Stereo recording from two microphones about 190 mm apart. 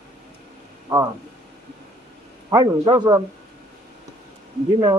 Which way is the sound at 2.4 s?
20° right (ahead or behind).